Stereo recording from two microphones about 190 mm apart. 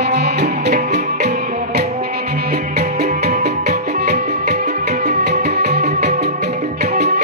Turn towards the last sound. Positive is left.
turn(degrees=-60)  # may be behind; listen again after turning